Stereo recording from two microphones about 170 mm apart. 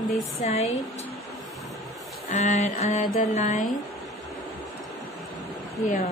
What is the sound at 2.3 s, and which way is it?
Mantra, 45° left (ahead or behind).